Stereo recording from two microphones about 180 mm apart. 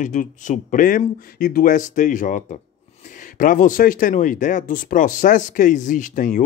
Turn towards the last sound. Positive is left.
turn(degrees=45)  # may be behind; listen again after turning